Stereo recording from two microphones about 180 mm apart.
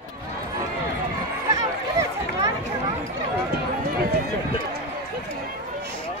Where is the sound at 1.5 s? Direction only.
20° right (ahead or behind).